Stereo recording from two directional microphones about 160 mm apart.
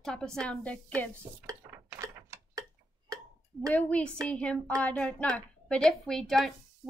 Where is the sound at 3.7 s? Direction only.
10° left (ahead or behind).